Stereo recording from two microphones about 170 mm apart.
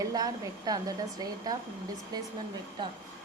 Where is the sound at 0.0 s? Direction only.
20° right (ahead or behind).